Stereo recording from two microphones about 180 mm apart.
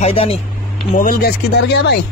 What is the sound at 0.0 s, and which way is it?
Speech, 35° left (ahead or behind).